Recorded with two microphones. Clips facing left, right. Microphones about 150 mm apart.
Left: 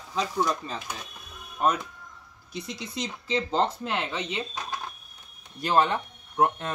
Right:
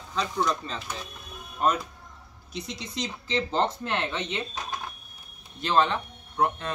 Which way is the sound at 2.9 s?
5° left (ahead or behind).